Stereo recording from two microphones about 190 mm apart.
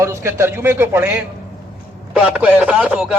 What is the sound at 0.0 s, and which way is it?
A man's voice, 15° right (ahead or behind).